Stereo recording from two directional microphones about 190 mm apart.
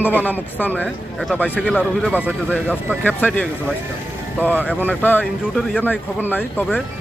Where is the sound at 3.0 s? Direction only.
10° left (ahead or behind).